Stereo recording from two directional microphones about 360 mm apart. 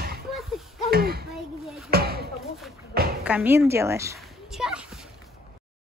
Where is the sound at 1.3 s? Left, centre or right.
Centre.